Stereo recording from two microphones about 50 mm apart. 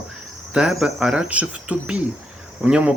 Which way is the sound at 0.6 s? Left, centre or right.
Centre.